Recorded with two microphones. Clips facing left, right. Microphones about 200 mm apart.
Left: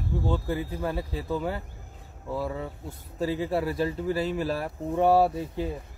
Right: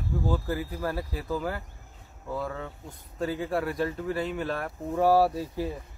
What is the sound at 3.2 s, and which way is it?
Speech, 25° left (ahead or behind).